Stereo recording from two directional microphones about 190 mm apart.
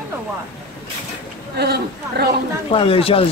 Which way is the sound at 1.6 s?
55° right (ahead or behind).